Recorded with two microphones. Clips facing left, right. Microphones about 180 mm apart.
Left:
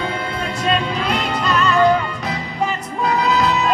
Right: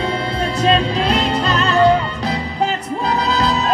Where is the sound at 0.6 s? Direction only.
35° right (ahead or behind).